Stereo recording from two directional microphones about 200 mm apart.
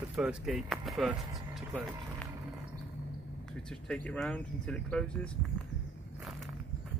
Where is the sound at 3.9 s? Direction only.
5° left (ahead or behind).